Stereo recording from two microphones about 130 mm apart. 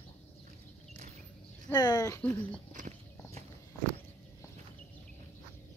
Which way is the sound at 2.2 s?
10° left (ahead or behind).